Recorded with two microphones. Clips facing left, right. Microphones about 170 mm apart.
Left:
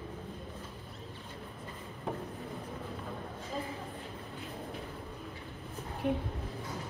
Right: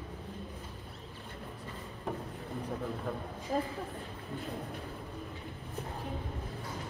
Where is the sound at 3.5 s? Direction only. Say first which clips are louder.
Right 6 dB; 55° right (ahead or behind).